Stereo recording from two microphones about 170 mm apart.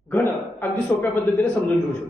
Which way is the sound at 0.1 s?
15° left (ahead or behind).